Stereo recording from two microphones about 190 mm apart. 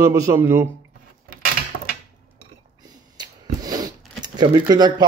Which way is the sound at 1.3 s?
50° right (ahead or behind).